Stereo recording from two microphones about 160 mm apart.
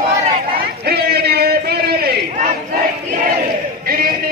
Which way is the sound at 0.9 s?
80° right.